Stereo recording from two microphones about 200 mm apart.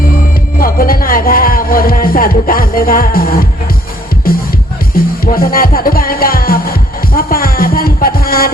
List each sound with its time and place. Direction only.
0.6 s music: 45° left (ahead or behind)